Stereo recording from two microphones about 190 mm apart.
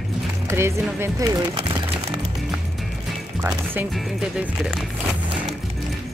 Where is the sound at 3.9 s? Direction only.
Centre (ahead or behind).